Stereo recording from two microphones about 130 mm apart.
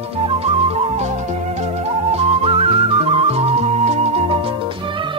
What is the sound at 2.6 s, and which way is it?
Music, 45° right (ahead or behind).